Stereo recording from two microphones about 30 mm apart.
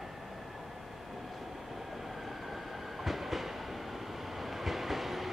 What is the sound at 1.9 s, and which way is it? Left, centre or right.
Train, centre.